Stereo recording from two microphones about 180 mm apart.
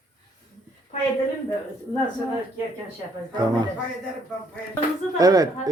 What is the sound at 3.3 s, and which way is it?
Speech, 25° right (ahead or behind).